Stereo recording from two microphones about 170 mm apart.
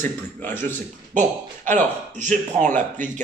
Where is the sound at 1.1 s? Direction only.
45° right (ahead or behind).